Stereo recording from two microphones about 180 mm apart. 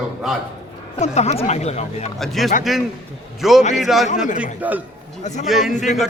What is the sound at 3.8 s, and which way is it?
Speech, centre (ahead or behind).